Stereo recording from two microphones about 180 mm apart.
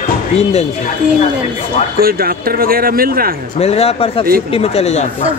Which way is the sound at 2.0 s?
55° right (ahead or behind).